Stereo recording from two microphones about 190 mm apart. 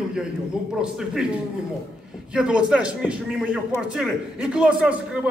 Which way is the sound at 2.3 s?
5° right (ahead or behind).